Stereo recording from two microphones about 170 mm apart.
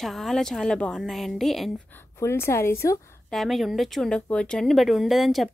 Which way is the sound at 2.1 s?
15° left (ahead or behind).